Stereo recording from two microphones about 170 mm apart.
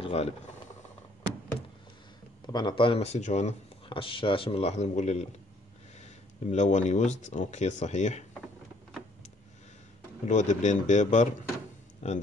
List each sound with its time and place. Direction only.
0.0 s speech: 35° left (ahead or behind)
2.4 s speech: 25° left (ahead or behind); by 8.3 s 45° left (ahead or behind)
10.2 s speech: 45° left (ahead or behind)